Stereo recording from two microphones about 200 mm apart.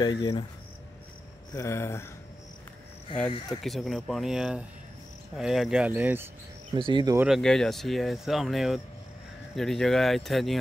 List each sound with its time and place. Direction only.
0.0 s speech: 25° left (ahead or behind)
1.5 s speech: 15° left (ahead or behind)
3.6 s speech: centre (ahead or behind)
6.7 s speech: 25° right (ahead or behind)
7.2 s speech: centre (ahead or behind)